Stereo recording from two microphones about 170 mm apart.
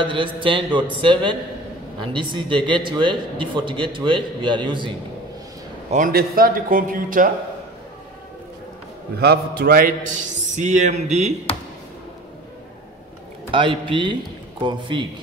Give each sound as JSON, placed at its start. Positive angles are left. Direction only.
{"t": 0.0, "sound": "a man's voice", "side_deg": -30}
{"t": 5.9, "sound": "a man's voice", "side_deg": -50}
{"t": 9.2, "sound": "a man's voice", "side_deg": -65}
{"t": 13.5, "sound": "a man's voice", "side_deg": -30}